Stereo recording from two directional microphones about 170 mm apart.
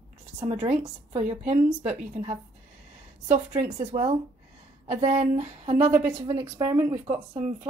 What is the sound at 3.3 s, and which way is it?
Speech, 45° right (ahead or behind).